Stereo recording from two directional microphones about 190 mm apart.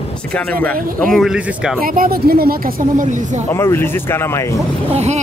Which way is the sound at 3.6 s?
10° left (ahead or behind).